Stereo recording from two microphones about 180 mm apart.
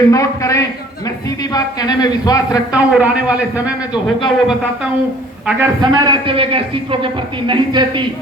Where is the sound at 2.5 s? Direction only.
5° right (ahead or behind).